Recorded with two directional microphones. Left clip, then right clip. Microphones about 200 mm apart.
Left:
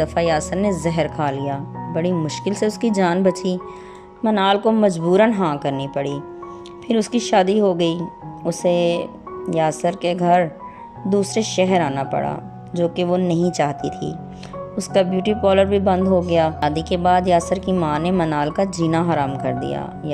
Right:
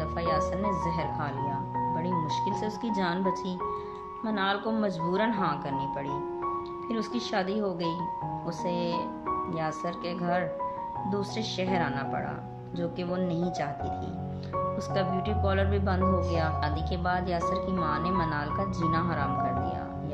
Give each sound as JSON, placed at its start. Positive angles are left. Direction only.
{"t": 0.0, "sound": "speech", "side_deg": 40}